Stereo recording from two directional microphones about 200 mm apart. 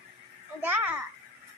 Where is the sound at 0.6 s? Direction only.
10° right (ahead or behind).